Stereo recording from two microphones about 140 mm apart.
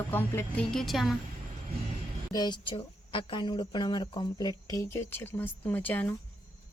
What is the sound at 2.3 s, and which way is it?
Speech, 30° left (ahead or behind).